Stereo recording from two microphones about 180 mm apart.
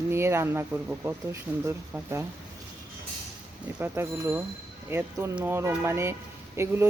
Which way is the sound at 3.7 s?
10° right (ahead or behind).